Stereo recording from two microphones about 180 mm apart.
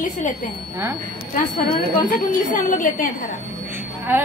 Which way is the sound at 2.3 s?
45° left (ahead or behind).